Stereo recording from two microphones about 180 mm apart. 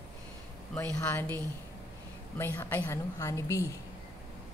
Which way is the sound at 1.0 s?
10° left (ahead or behind).